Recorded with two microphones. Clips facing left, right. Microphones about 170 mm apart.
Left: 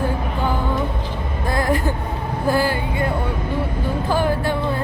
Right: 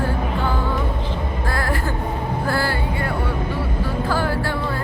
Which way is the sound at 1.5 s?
20° left (ahead or behind).